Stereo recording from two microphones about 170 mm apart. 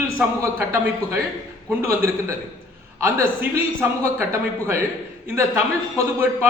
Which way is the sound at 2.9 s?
15° right (ahead or behind).